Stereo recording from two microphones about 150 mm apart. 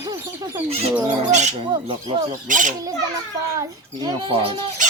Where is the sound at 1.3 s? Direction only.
50° right (ahead or behind).